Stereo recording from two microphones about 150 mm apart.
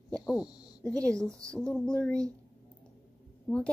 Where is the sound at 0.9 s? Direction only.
20° right (ahead or behind).